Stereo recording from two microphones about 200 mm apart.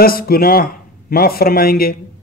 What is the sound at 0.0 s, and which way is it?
A man's voice, 50° left (ahead or behind).